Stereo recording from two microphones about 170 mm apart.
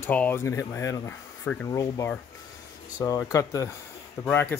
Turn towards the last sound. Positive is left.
turn(degrees=10)  # may be behind; listen again after turning